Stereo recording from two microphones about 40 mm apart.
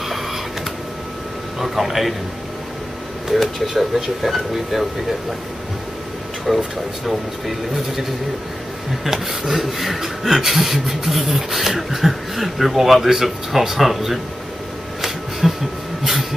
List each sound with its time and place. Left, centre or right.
1.6 s speech: centre
3.3 s speech: centre
6.5 s speech: centre
15.0 s a sound: centre